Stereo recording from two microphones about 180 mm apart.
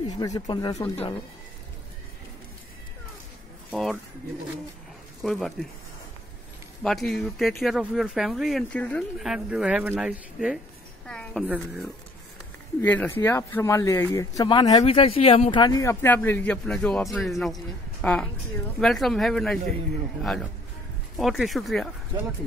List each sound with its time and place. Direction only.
0.0 s speech: 25° left (ahead or behind)
3.7 s speech: centre (ahead or behind)
5.2 s speech: centre (ahead or behind)
6.8 s a woman's voice: centre (ahead or behind)
11.4 s speech: 10° right (ahead or behind)
12.8 s speech: 10° left (ahead or behind)
14.9 s speech: 30° left (ahead or behind); by 21.8 s centre (ahead or behind)